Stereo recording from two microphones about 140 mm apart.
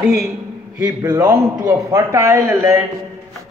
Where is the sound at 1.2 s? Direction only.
15° right (ahead or behind).